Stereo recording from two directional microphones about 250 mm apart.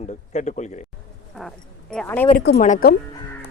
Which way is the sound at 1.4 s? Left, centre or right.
Centre.